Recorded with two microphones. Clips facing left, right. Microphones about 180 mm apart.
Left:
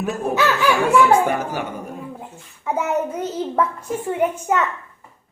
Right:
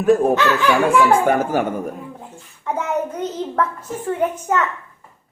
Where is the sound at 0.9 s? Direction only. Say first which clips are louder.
Even; 50° right (ahead or behind).